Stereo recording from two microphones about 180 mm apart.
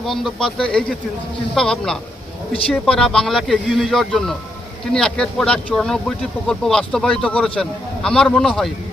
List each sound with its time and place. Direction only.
0.0 s speech: centre (ahead or behind)